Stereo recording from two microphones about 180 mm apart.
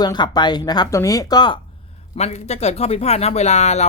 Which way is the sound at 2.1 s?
40° left (ahead or behind).